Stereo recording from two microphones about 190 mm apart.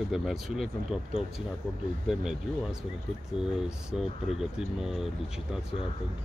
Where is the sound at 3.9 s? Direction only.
5° right (ahead or behind).